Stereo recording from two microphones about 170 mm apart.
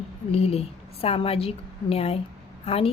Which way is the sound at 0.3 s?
35° left (ahead or behind).